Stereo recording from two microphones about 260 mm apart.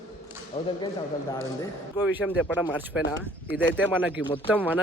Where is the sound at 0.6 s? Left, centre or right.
Left.